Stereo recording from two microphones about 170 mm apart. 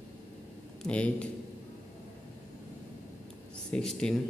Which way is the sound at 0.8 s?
5° left (ahead or behind).